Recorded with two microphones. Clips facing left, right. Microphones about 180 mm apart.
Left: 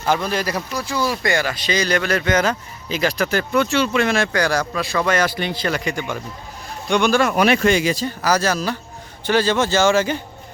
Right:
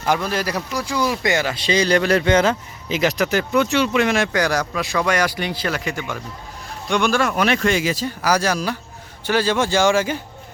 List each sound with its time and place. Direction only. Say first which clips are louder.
0.3 s speech: even; 5° right (ahead or behind)
7.3 s speech: left 3 dB; 10° left (ahead or behind)
7.7 s speech: left 2 dB; 5° right (ahead or behind)